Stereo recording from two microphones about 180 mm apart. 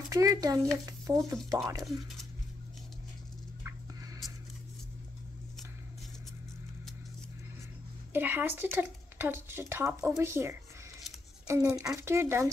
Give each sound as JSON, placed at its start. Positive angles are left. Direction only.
{"t": 0.1, "sound": "speech", "side_deg": -20}
{"t": 1.8, "sound": "speech", "side_deg": 0}
{"t": 4.2, "sound": "a sound", "side_deg": 0}
{"t": 8.1, "sound": "speech", "side_deg": -10}